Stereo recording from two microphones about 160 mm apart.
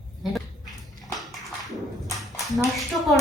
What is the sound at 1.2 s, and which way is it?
Bathtub, centre (ahead or behind).